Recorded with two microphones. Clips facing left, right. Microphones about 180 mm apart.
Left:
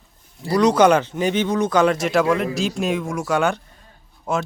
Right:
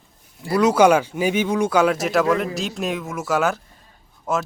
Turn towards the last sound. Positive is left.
turn(degrees=0)  # may be behind; listen again after turning